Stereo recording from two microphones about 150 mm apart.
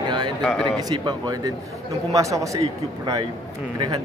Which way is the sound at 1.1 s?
25° right (ahead or behind).